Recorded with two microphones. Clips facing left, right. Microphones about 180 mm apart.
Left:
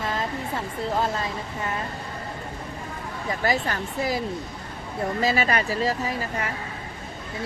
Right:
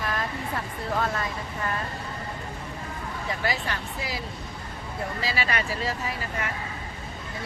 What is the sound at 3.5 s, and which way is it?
Speech, 45° left (ahead or behind).